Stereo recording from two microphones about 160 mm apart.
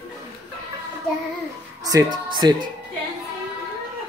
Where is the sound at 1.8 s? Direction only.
25° right (ahead or behind).